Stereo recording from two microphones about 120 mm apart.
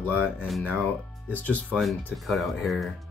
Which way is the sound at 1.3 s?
10° left (ahead or behind).